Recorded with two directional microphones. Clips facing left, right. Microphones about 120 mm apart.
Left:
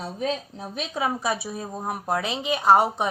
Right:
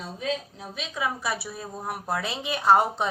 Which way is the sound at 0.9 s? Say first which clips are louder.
Left 3 dB; 25° left (ahead or behind).